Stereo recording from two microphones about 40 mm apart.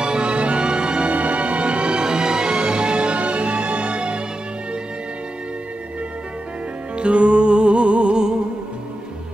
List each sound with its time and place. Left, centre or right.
0.0 s music: right
7.0 s music: right